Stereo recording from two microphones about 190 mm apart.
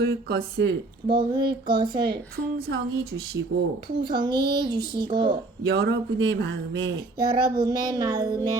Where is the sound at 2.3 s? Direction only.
55° right (ahead or behind).